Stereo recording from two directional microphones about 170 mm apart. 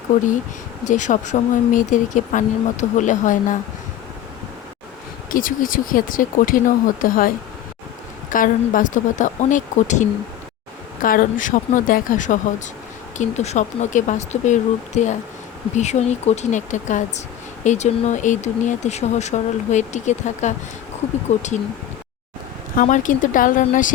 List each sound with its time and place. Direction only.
0.9 s speech: 45° left (ahead or behind)
5.3 s speech: 55° left (ahead or behind)
22.7 s speech: 50° left (ahead or behind)